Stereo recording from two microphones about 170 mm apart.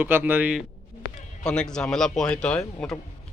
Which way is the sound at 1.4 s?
5° left (ahead or behind).